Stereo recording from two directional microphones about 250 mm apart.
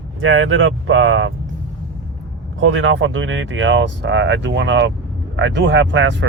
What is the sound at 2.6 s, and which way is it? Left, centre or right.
Speech, right.